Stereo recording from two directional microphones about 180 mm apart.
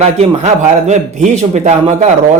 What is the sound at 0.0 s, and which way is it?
A man's voice, 40° right (ahead or behind).